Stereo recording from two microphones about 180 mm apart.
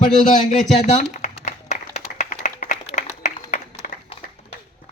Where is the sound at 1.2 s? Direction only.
40° left (ahead or behind).